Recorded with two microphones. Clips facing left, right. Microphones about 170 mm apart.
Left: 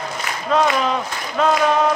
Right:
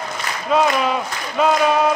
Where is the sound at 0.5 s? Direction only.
10° right (ahead or behind).